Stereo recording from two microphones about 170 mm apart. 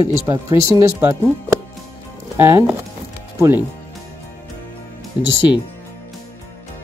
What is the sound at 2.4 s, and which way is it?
Speech, 15° right (ahead or behind).